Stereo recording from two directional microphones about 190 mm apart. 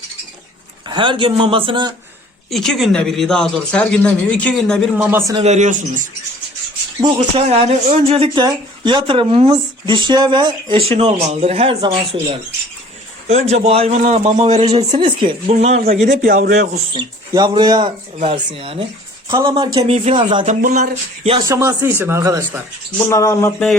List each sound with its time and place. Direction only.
0.9 s speech: 25° right (ahead or behind)
2.5 s speech: centre (ahead or behind)
4.9 s speech: 10° right (ahead or behind)
5.4 s a man's voice: 35° right (ahead or behind)
13.2 s a man's voice: 35° right (ahead or behind)
15.8 s speech: 50° right (ahead or behind)
16.9 s speech: 25° right (ahead or behind)
20.4 s a man's voice: 45° right (ahead or behind)
21.2 s speech: 20° right (ahead or behind)
23.0 s speech: 15° left (ahead or behind)